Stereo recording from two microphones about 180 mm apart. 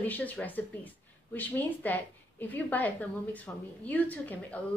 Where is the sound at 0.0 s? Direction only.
10° left (ahead or behind).